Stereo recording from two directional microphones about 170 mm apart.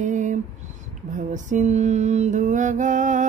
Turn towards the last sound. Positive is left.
turn(degrees=-45)  # may be behind; listen again after turning